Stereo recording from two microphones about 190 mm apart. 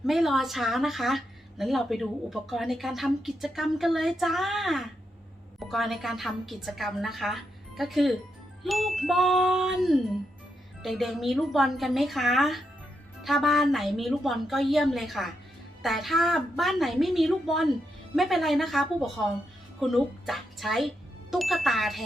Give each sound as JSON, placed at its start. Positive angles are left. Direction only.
{"t": 0.0, "sound": "a child's voice", "side_deg": 0}